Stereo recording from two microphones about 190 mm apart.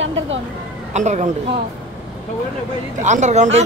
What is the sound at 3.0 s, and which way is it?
Speech, 40° right (ahead or behind).